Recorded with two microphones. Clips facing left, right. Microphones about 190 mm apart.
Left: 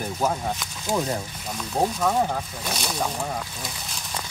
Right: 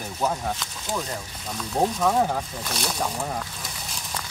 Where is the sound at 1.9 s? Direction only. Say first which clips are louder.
Right 1 dB; centre (ahead or behind).